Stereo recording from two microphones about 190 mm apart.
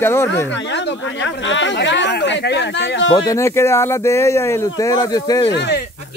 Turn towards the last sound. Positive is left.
turn(degrees=65)  # may be behind; listen again after turning